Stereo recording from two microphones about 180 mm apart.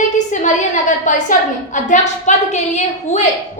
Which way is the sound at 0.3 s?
45° left (ahead or behind).